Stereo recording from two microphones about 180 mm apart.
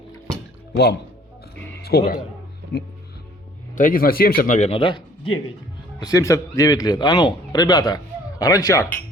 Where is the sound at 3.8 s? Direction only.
50° left (ahead or behind).